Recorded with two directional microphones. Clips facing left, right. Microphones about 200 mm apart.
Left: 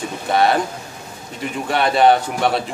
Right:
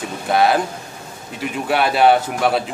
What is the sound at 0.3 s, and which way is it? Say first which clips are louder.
Speech: right 1 dB; centre (ahead or behind).